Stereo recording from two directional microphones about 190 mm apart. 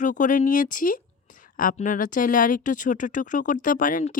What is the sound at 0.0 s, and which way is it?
Speech, 40° left (ahead or behind).